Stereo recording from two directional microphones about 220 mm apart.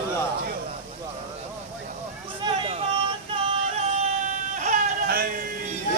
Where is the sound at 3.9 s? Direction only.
35° right (ahead or behind).